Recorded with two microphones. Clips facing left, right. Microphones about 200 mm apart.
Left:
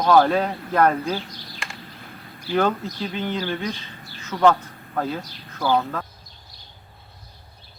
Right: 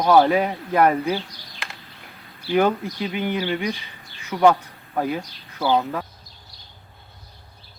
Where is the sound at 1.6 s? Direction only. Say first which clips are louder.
Even; centre (ahead or behind).